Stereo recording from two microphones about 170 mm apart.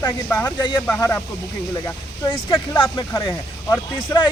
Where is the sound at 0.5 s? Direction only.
25° left (ahead or behind).